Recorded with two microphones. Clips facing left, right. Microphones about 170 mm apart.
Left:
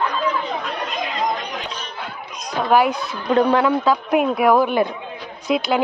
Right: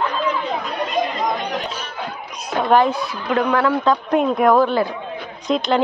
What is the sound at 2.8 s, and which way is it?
Speech, 15° left (ahead or behind).